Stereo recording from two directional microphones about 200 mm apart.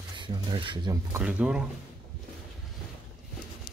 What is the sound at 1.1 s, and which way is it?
Speech, 5° right (ahead or behind).